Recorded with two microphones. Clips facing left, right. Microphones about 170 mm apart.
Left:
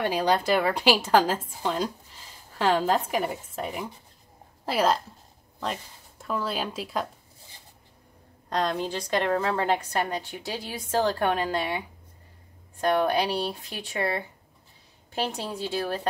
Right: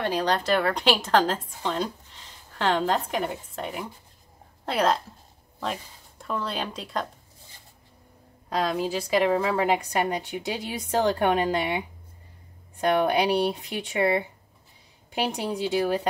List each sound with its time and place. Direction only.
0.0 s a woman's voice: 10° left (ahead or behind)
8.5 s a woman's voice: 5° right (ahead or behind)
12.8 s a woman's voice: 15° right (ahead or behind)